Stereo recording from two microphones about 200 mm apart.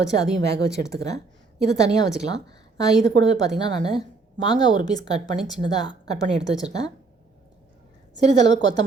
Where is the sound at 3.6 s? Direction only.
20° left (ahead or behind).